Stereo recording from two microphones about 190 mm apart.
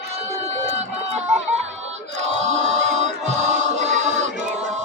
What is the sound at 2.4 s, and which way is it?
Music, 35° right (ahead or behind).